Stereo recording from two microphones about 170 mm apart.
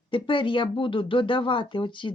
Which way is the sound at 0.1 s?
30° left (ahead or behind).